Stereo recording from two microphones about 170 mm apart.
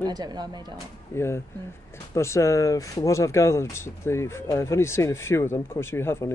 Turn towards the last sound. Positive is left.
turn(degrees=15)  # may be behind; listen again after turning